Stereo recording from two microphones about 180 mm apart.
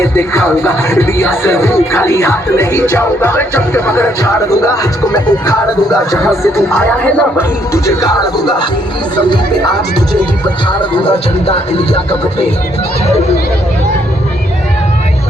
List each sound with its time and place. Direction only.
0.0 s music: 15° left (ahead or behind)
10.7 s speech: 25° left (ahead or behind)
11.4 s music: 35° left (ahead or behind)